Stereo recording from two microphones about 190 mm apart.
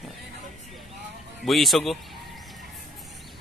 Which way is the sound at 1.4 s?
Centre (ahead or behind).